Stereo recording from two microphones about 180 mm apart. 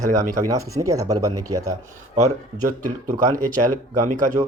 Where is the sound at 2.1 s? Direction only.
40° right (ahead or behind).